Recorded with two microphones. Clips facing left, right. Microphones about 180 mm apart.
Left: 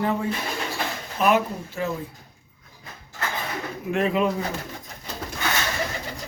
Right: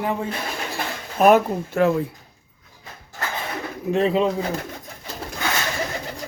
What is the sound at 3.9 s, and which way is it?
Speech, 30° right (ahead or behind).